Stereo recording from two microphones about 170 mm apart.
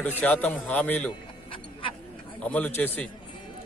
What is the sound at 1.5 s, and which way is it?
Music, 30° left (ahead or behind).